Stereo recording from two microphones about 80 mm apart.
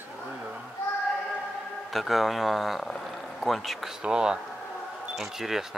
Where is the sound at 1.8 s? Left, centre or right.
Centre.